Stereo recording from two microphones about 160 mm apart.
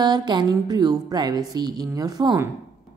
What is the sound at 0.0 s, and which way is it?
Speech, 25° right (ahead or behind).